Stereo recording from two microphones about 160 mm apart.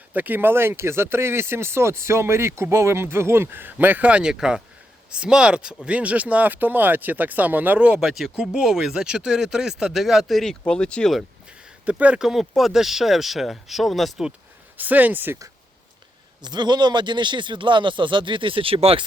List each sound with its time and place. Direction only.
0.1 s speech: 10° right (ahead or behind)
16.4 s a man's voice: 25° right (ahead or behind)